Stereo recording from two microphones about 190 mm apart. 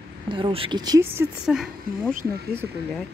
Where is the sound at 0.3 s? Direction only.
25° right (ahead or behind).